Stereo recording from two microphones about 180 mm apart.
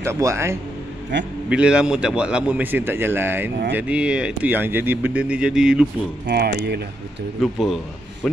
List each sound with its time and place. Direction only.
0.0 s speech: 15° right (ahead or behind)
1.1 s a man's voice: 80° right
1.5 s speech: 5° right (ahead or behind)
6.2 s speech: 60° right (ahead or behind)
7.6 s a man's voice: centre (ahead or behind)